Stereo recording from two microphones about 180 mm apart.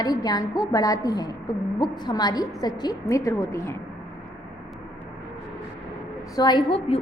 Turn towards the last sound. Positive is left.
turn(degrees=25)  # may be behind; listen again after turning